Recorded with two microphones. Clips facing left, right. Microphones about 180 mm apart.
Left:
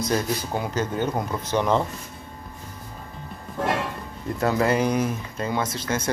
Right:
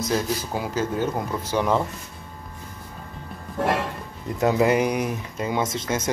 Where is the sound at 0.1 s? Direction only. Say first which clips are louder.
Right 1 dB; 5° right (ahead or behind).